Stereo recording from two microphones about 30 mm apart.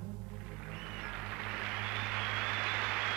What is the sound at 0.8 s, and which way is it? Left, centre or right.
Vehicle, centre.